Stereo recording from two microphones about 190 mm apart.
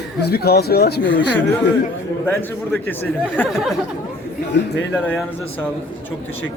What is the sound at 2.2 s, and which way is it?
Speech, 10° left (ahead or behind).